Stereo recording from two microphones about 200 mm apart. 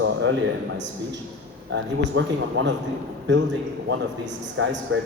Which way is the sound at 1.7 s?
65° right (ahead or behind).